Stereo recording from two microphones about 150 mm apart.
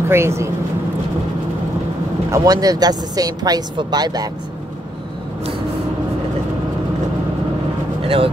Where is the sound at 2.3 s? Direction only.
25° right (ahead or behind).